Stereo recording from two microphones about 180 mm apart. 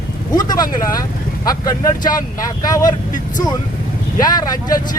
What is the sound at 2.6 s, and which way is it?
Speech, 20° left (ahead or behind).